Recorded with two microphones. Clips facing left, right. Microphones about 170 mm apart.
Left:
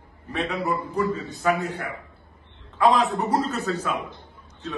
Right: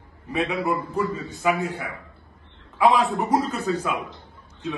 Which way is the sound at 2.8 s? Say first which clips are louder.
Right 1 dB; 10° right (ahead or behind).